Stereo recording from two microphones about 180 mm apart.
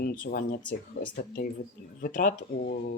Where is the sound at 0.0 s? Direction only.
50° left (ahead or behind).